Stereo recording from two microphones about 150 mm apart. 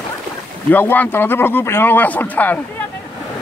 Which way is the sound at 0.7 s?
10° left (ahead or behind).